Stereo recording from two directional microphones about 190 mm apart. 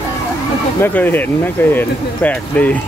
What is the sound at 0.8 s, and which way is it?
Speech, 10° left (ahead or behind).